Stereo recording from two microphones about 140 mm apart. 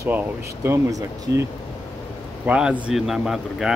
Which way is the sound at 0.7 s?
20° right (ahead or behind).